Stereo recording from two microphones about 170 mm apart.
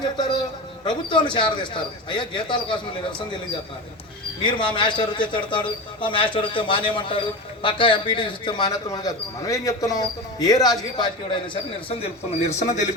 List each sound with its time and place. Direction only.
0.9 s speech: 30° left (ahead or behind)
4.4 s speech: 30° left (ahead or behind)
11.9 s a man's voice: 40° left (ahead or behind)